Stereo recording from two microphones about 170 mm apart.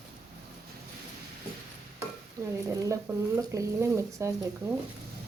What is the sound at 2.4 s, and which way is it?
Speech, 20° right (ahead or behind).